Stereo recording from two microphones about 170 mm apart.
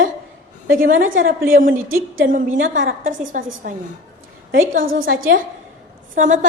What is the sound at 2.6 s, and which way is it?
Speech, 90° right.